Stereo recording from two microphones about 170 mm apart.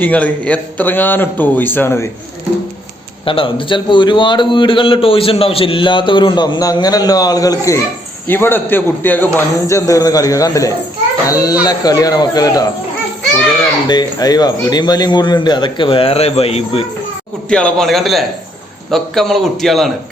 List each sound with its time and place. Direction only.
0.0 s a man's voice: 10° left (ahead or behind)
3.2 s a man's voice: 30° left (ahead or behind)
13.8 s a man's voice: 25° left (ahead or behind)
17.5 s a man's voice: 5° left (ahead or behind)